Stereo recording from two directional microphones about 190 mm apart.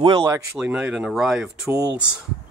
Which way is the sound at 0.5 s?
5° right (ahead or behind).